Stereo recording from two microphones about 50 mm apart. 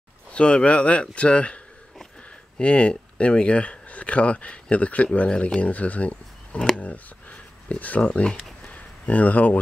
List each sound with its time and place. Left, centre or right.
0.3 s speech: left
2.6 s speech: left
8.1 s speech: centre
8.6 s a sound: left